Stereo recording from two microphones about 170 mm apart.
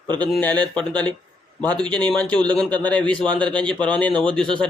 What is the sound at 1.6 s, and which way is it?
Speech, 25° right (ahead or behind).